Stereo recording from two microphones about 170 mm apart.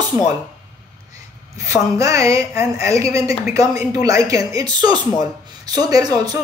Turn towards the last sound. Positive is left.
turn(degrees=-20)  # may be behind; listen again after turning